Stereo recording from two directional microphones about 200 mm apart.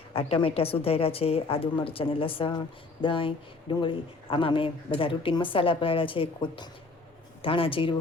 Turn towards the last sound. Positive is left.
turn(degrees=25)  # may be behind; listen again after turning